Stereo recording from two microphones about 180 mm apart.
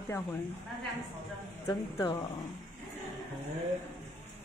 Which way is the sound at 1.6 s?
20° left (ahead or behind).